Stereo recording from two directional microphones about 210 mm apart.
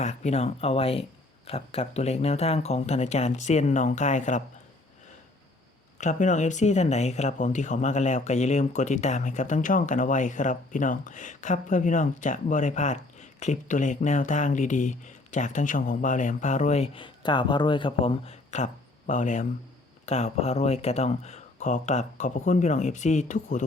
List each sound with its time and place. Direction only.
0.0 s speech: 35° left (ahead or behind)
6.0 s speech: 35° left (ahead or behind)